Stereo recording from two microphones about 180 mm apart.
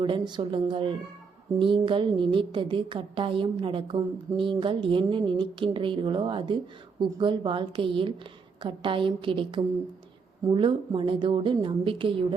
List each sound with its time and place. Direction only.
0.0 s a woman's voice: 25° right (ahead or behind)